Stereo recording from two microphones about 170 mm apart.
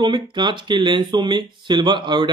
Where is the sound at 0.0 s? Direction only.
25° right (ahead or behind).